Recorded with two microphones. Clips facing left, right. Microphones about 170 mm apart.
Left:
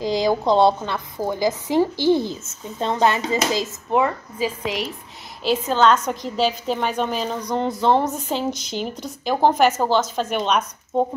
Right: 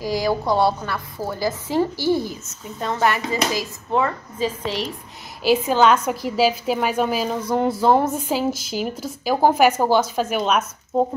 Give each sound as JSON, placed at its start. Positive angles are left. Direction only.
{"t": 0.0, "sound": "a woman's voice", "side_deg": 20}
{"t": 5.4, "sound": "a woman's voice", "side_deg": -10}